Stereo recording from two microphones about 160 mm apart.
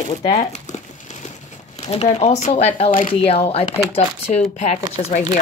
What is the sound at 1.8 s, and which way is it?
Speech, 45° left (ahead or behind).